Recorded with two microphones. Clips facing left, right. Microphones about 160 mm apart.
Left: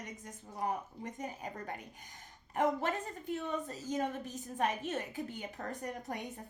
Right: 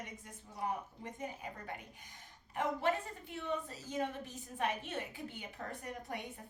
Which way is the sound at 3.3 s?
45° left (ahead or behind).